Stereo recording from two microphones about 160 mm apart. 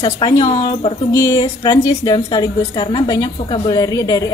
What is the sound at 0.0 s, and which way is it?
A woman's voice, 25° left (ahead or behind).